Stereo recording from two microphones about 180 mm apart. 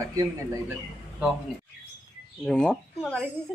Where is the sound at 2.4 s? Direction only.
5° left (ahead or behind).